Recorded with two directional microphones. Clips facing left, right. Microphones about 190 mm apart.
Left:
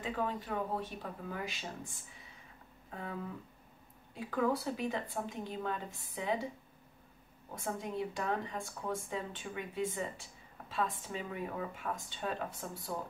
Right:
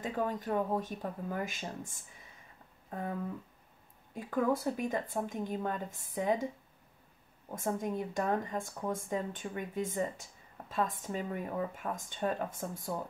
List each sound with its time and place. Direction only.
0.0 s a woman's voice: 45° right (ahead or behind)
4.1 s a woman's voice: 50° right (ahead or behind)
7.5 s a woman's voice: 45° right (ahead or behind)